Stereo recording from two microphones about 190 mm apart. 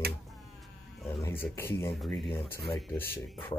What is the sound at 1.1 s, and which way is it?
Speech, 15° left (ahead or behind).